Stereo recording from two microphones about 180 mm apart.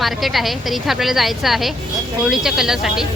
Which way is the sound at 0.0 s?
Centre (ahead or behind).